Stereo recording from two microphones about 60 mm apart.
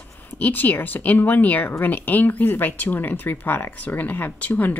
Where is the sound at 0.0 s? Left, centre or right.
Left.